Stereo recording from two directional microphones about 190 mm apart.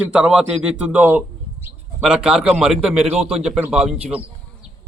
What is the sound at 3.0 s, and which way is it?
Speech, 30° right (ahead or behind).